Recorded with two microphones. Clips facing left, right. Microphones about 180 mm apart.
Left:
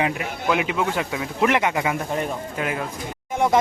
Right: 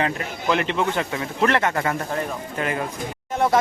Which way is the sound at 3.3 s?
15° left (ahead or behind).